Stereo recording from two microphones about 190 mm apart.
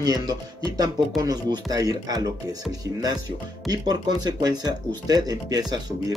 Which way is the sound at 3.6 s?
20° right (ahead or behind).